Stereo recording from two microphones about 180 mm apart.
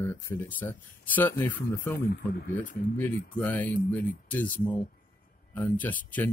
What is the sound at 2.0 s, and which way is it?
Speech, 70° left (ahead or behind).